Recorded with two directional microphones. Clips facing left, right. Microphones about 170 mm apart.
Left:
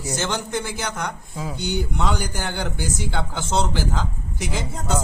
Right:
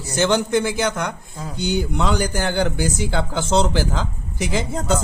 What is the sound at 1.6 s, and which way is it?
A man's voice, 90° right.